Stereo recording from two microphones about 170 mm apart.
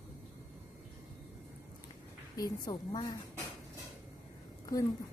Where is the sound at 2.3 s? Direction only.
25° left (ahead or behind).